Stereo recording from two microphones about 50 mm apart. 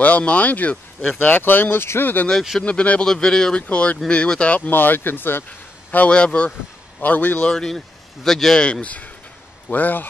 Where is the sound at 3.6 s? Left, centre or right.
Left.